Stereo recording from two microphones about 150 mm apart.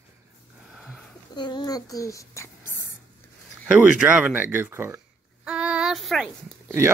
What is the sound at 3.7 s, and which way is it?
Speech, 10° right (ahead or behind).